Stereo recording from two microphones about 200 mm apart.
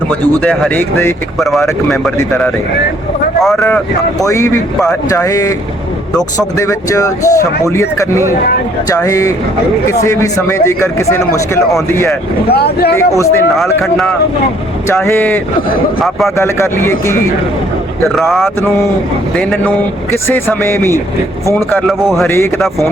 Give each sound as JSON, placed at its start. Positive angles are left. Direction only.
{"t": 0.3, "sound": "speech", "side_deg": 10}
{"t": 1.4, "sound": "speech", "side_deg": 0}
{"t": 2.1, "sound": "speech", "side_deg": 15}
{"t": 3.4, "sound": "speech", "side_deg": 0}
{"t": 4.2, "sound": "speech", "side_deg": 15}
{"t": 6.6, "sound": "speech", "side_deg": 15}
{"t": 12.5, "sound": "speech", "side_deg": 50}
{"t": 13.0, "sound": "speech", "side_deg": 15}
{"t": 13.8, "sound": "speech", "side_deg": 0}
{"t": 14.8, "sound": "speech", "side_deg": 15}
{"t": 16.4, "sound": "speech", "side_deg": 15}
{"t": 18.1, "sound": "speech", "side_deg": 0}
{"t": 22.3, "sound": "speech", "side_deg": 10}